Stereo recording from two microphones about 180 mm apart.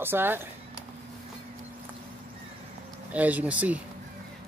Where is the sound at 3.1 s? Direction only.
10° right (ahead or behind).